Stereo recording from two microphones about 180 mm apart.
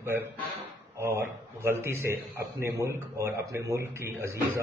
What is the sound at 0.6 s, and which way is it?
Speech, 15° right (ahead or behind).